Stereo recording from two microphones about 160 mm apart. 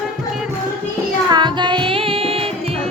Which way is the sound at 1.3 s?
30° right (ahead or behind).